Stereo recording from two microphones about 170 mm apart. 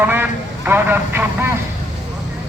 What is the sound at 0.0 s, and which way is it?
Speech, 10° right (ahead or behind).